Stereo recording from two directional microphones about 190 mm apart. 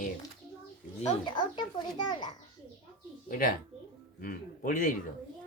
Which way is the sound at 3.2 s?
45° left (ahead or behind).